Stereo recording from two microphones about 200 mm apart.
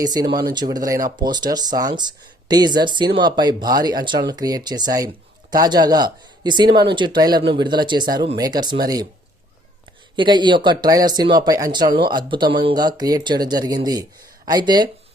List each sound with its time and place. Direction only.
0.0 s speech: 20° right (ahead or behind)
10.2 s speech: 25° right (ahead or behind)